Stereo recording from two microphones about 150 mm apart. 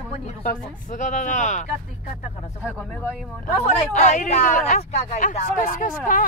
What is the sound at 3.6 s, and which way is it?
Speech, 50° left (ahead or behind).